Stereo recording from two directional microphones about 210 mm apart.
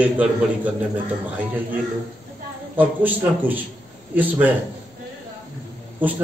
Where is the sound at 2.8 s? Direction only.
10° right (ahead or behind).